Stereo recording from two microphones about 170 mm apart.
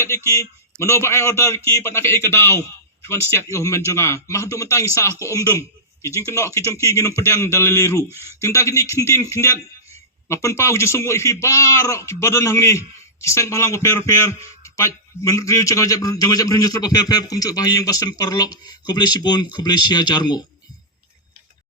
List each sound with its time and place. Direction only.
0.3 s a man's voice: 15° left (ahead or behind)